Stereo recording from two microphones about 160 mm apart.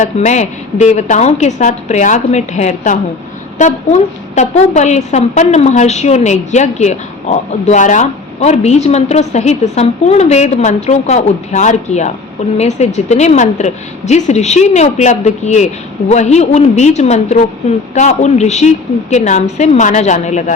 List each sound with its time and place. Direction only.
0.0 s a woman's voice: 50° left (ahead or behind)